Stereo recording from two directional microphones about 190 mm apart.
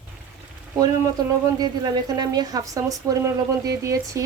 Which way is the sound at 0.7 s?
20° right (ahead or behind).